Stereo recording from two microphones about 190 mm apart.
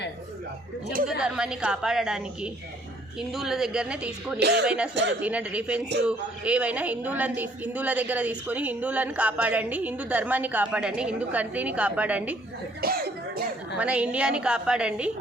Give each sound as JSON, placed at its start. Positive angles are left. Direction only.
{"t": 1.2, "sound": "a woman's voice", "side_deg": -5}
{"t": 4.4, "sound": "speech", "side_deg": -60}
{"t": 4.6, "sound": "a woman's voice", "side_deg": -5}
{"t": 12.8, "sound": "speech", "side_deg": -55}
{"t": 13.7, "sound": "a woman's voice", "side_deg": -5}